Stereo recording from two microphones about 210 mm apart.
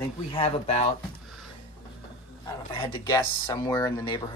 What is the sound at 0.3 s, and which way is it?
Speech, 25° left (ahead or behind).